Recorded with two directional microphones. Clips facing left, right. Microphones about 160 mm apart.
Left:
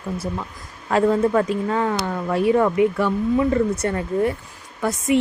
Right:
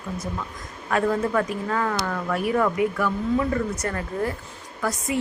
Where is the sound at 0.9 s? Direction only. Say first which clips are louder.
Left 5 dB; 25° left (ahead or behind).